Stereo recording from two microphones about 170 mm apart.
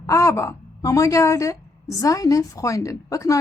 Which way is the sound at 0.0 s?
20° left (ahead or behind).